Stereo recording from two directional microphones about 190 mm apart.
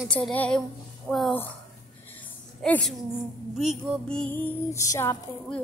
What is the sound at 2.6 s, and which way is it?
Music, 10° left (ahead or behind).